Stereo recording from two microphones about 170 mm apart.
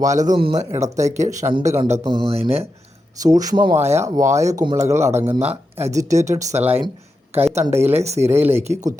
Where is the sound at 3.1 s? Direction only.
20° right (ahead or behind).